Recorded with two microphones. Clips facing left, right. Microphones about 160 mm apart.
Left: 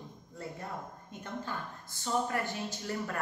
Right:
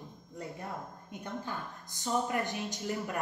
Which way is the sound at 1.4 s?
15° right (ahead or behind).